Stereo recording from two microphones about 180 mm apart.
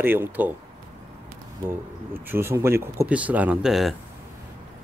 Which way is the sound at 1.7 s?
10° right (ahead or behind).